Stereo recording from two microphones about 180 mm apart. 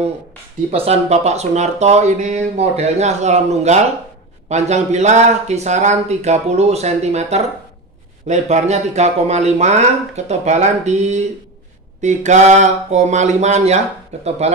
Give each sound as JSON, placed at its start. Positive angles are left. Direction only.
{"t": 0.7, "sound": "speech", "side_deg": -35}